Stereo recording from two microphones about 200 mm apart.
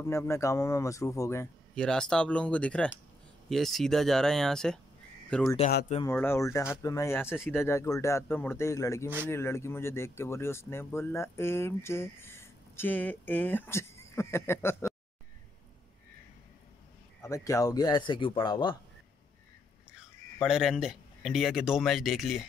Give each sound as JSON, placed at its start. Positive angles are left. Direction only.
{"t": 0.0, "sound": "speech", "side_deg": 15}
{"t": 17.2, "sound": "speech", "side_deg": 15}
{"t": 20.4, "sound": "speech", "side_deg": -5}